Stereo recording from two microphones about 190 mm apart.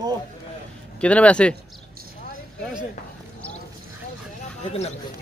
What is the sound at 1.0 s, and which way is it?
Speech, 5° left (ahead or behind).